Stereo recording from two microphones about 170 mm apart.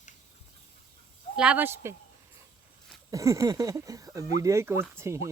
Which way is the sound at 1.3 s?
5° right (ahead or behind).